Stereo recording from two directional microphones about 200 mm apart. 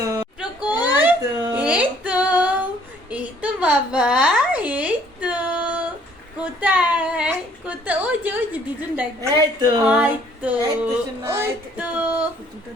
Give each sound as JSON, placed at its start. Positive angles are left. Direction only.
{"t": 0.0, "sound": "a sound", "side_deg": -15}
{"t": 0.9, "sound": "baby cry", "side_deg": -15}
{"t": 1.6, "sound": "female singing", "side_deg": -5}
{"t": 3.1, "sound": "a sound", "side_deg": -5}
{"t": 9.3, "sound": "speech", "side_deg": -20}
{"t": 9.8, "sound": "female singing", "side_deg": -5}
{"t": 11.2, "sound": "music", "side_deg": -10}